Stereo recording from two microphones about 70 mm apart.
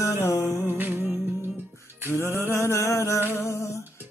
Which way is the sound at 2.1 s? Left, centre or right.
Left.